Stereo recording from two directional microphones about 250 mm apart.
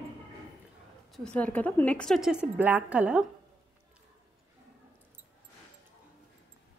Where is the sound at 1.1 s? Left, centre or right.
Centre.